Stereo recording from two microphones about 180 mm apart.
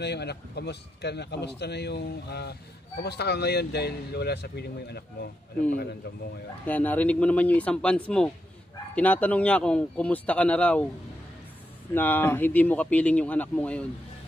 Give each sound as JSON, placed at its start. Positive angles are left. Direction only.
{"t": 0.0, "sound": "a man's voice", "side_deg": 70}
{"t": 6.6, "sound": "speech", "side_deg": 10}
{"t": 11.9, "sound": "speech", "side_deg": 10}